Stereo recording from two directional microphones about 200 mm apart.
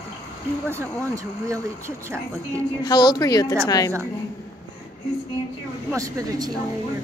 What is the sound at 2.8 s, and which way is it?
A woman's voice, 20° left (ahead or behind).